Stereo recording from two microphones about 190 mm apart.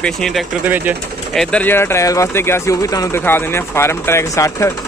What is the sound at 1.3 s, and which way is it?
Speech, 5° left (ahead or behind).